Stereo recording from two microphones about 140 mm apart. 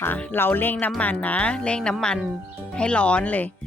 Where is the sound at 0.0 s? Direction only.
10° left (ahead or behind).